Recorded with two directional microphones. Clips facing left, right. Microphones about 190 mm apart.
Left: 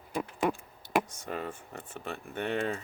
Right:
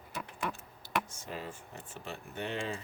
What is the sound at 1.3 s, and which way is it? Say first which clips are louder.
Speech: left 5 dB; 55° left (ahead or behind).